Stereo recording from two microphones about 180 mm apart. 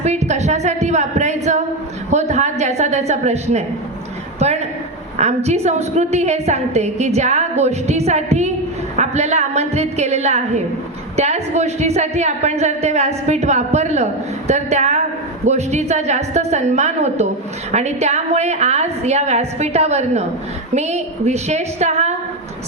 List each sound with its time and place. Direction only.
0.0 s a woman's voice: 40° right (ahead or behind)